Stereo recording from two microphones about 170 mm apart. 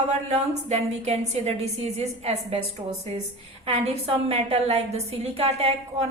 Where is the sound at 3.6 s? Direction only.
40° right (ahead or behind).